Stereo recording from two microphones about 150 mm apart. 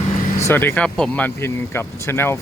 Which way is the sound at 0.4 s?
15° left (ahead or behind).